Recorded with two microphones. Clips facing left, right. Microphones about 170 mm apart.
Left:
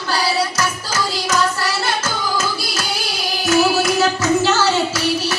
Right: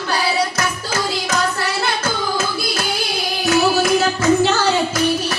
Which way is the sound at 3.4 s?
55° right (ahead or behind).